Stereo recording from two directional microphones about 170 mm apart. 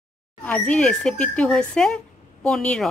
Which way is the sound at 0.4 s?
5° left (ahead or behind).